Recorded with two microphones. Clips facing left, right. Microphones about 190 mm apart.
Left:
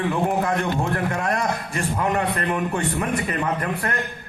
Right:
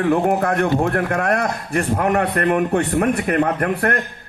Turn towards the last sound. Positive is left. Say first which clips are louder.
# right 6 dB
turn(degrees=-60)  # may be behind; listen again after turning